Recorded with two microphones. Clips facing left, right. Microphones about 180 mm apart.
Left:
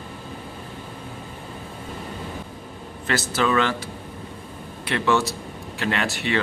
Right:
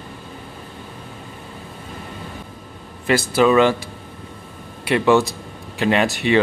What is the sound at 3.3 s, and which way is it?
A man's voice, 15° right (ahead or behind).